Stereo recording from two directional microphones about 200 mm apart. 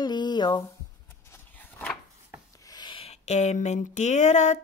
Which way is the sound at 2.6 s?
20° left (ahead or behind).